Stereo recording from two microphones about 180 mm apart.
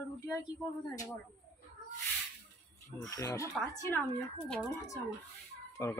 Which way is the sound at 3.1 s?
20° left (ahead or behind).